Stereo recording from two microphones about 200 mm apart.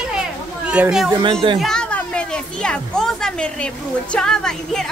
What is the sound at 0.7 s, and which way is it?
A woman's voice, 5° right (ahead or behind).